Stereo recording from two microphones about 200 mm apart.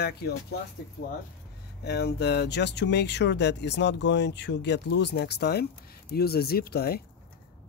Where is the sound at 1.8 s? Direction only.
55° left (ahead or behind).